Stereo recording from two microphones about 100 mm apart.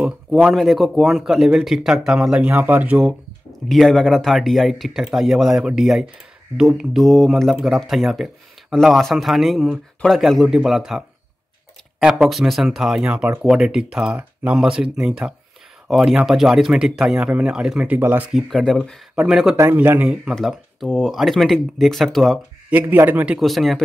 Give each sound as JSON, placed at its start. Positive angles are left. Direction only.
{"t": 0.4, "sound": "speech", "side_deg": -5}
{"t": 2.4, "sound": "speech", "side_deg": -15}
{"t": 3.6, "sound": "speech", "side_deg": 0}
{"t": 17.9, "sound": "speech", "side_deg": -20}
{"t": 18.3, "sound": "speech", "side_deg": 5}
{"t": 19.7, "sound": "speech", "side_deg": -15}
{"t": 20.3, "sound": "speech", "side_deg": 5}
{"t": 22.7, "sound": "speech", "side_deg": -15}
{"t": 23.4, "sound": "speech", "side_deg": 0}